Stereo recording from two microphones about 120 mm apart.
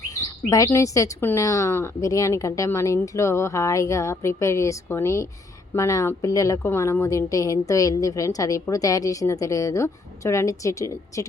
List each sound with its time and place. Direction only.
0.1 s speech: 30° left (ahead or behind)